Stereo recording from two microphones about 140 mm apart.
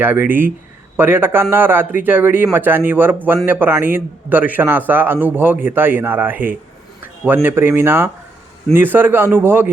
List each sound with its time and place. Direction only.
0.0 s a man's voice: 15° right (ahead or behind)